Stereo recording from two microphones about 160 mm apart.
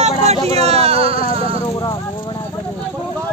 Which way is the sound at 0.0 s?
45° right (ahead or behind).